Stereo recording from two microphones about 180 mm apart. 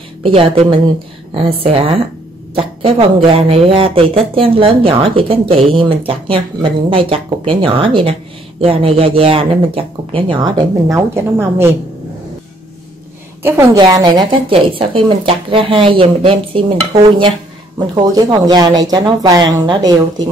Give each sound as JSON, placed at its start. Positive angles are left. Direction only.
{"t": 0.2, "sound": "a woman's voice", "side_deg": -30}
{"t": 13.4, "sound": "a woman's voice", "side_deg": -15}
{"t": 17.9, "sound": "a woman's voice", "side_deg": -20}